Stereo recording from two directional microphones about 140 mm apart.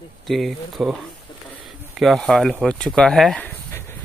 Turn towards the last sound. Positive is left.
turn(degrees=5)  # may be behind; listen again after turning